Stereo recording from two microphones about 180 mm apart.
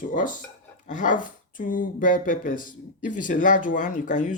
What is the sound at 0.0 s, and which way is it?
Speech, 45° left (ahead or behind).